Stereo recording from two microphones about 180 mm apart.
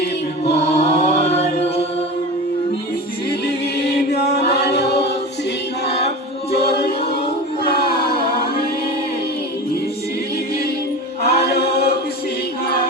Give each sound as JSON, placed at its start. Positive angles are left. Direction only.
{"t": 0.6, "sound": "chant", "side_deg": 35}
{"t": 3.8, "sound": "chant", "side_deg": 65}
{"t": 6.5, "sound": "music", "side_deg": 60}
{"t": 7.7, "sound": "a sound", "side_deg": 60}
{"t": 11.2, "sound": "chant", "side_deg": 60}